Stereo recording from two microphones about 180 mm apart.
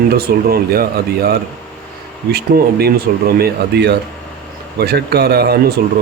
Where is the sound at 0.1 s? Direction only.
55° right (ahead or behind).